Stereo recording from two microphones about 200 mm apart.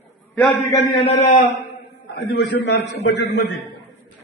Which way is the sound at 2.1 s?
55° left (ahead or behind).